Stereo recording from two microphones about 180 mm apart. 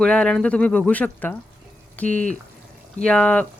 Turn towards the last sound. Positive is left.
turn(degrees=5)  # may be behind; listen again after turning